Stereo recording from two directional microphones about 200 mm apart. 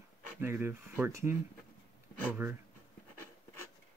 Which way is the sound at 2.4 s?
15° right (ahead or behind).